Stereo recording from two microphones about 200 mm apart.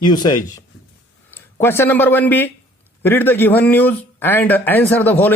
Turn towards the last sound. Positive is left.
turn(degrees=10)  # may be behind; listen again after turning